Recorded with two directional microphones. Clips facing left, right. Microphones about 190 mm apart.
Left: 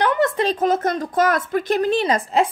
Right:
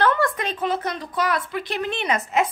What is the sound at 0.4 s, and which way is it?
A woman's voice, 40° left (ahead or behind).